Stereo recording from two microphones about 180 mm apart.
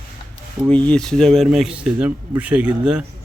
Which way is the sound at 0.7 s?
5° left (ahead or behind).